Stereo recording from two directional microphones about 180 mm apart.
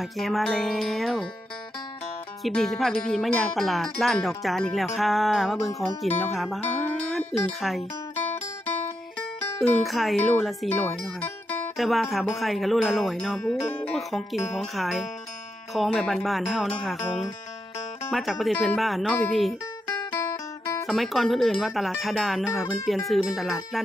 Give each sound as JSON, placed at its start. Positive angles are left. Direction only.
{"t": 0.0, "sound": "wind chime", "side_deg": 0}
{"t": 2.4, "sound": "wind chime", "side_deg": 0}
{"t": 6.6, "sound": "speech", "side_deg": 5}
{"t": 9.6, "sound": "wind chime", "side_deg": 0}
{"t": 10.7, "sound": "speech", "side_deg": 10}
{"t": 11.7, "sound": "wind chime", "side_deg": 0}
{"t": 20.8, "sound": "wind chime", "side_deg": 0}